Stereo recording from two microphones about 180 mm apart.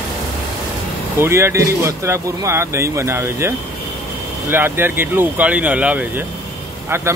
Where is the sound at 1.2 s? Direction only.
15° right (ahead or behind).